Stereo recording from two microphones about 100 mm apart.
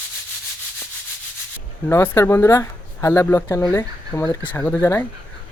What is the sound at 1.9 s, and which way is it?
Speech, 25° left (ahead or behind).